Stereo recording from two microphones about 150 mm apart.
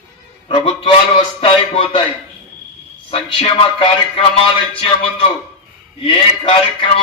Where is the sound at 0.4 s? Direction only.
40° left (ahead or behind).